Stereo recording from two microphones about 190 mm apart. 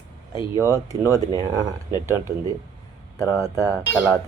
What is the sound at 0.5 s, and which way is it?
Speech, 15° right (ahead or behind).